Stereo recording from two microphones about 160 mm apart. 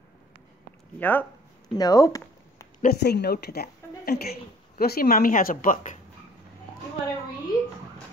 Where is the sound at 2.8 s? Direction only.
85° left; by 5.9 s 60° left (ahead or behind).